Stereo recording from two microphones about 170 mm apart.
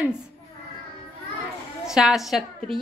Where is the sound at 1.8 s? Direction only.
Centre (ahead or behind).